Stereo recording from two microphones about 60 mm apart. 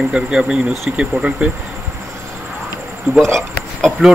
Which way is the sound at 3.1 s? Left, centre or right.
Right.